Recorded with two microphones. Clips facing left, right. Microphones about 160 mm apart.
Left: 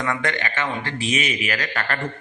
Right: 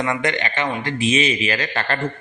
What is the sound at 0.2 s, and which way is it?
A man's voice, 20° right (ahead or behind).